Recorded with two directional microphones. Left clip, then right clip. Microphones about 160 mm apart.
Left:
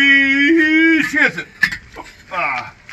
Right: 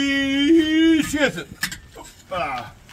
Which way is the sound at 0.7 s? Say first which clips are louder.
Left 5 dB; 35° right (ahead or behind).